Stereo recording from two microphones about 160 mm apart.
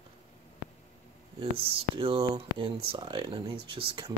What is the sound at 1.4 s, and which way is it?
Speech, 35° right (ahead or behind).